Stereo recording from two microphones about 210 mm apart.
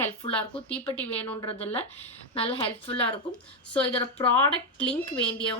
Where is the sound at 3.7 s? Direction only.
5° left (ahead or behind).